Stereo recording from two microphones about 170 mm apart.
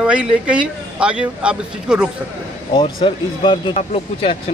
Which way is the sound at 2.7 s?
30° left (ahead or behind).